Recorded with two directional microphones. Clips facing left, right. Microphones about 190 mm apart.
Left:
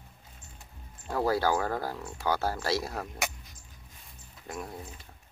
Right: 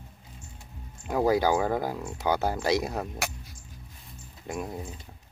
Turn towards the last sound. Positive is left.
turn(degrees=-20)  # may be behind; listen again after turning